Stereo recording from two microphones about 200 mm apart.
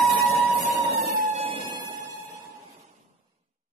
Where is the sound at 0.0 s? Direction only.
Centre (ahead or behind).